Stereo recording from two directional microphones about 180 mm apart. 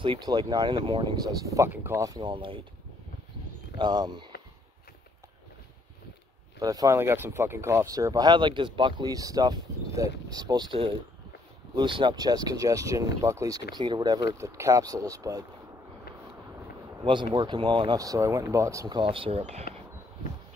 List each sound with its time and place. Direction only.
0.0 s speech: 25° right (ahead or behind)
3.7 s speech: 25° right (ahead or behind)
6.6 s speech: 20° right (ahead or behind)
17.0 s speech: 25° right (ahead or behind)